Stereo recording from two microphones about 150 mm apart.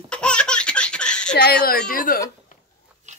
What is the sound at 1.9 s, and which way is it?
Speech, 65° left (ahead or behind).